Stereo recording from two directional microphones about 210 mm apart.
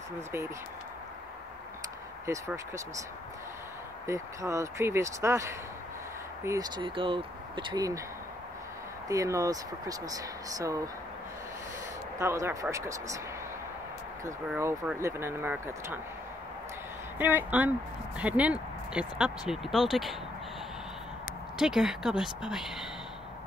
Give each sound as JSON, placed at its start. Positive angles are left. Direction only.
{"t": 2.2, "sound": "speech", "side_deg": -15}
{"t": 4.1, "sound": "speech", "side_deg": -15}
{"t": 9.1, "sound": "speech", "side_deg": -15}
{"t": 12.2, "sound": "speech", "side_deg": -15}
{"t": 14.2, "sound": "speech", "side_deg": -15}
{"t": 17.2, "sound": "speech", "side_deg": -10}
{"t": 21.5, "sound": "speech", "side_deg": 0}